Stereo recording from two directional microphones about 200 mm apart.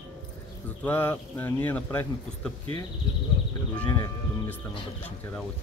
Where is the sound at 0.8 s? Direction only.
10° left (ahead or behind).